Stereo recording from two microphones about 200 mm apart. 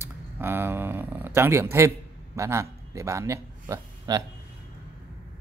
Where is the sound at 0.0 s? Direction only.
10° right (ahead or behind).